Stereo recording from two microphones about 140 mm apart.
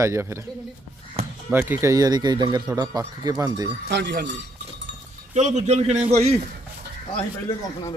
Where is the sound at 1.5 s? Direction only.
15° right (ahead or behind).